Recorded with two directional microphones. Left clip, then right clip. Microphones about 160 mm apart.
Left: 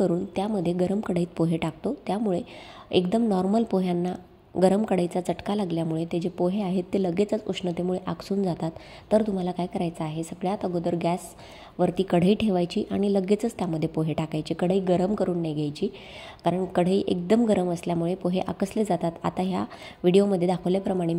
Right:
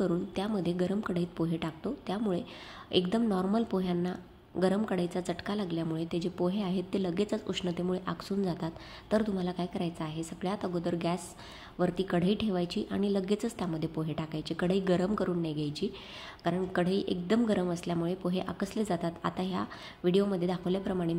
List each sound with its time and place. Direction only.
0.1 s a woman's voice: 25° left (ahead or behind)